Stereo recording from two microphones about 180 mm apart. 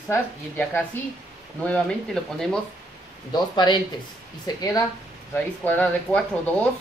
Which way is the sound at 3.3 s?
25° left (ahead or behind).